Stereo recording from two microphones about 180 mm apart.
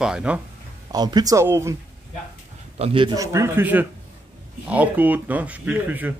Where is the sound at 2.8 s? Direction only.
30° right (ahead or behind); by 6.1 s 10° right (ahead or behind).